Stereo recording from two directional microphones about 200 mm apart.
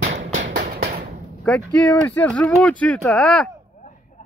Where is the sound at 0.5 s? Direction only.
45° right (ahead or behind).